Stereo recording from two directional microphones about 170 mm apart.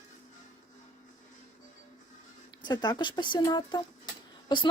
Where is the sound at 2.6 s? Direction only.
25° left (ahead or behind).